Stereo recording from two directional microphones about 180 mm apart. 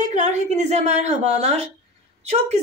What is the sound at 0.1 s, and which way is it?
A woman's voice, 40° right (ahead or behind).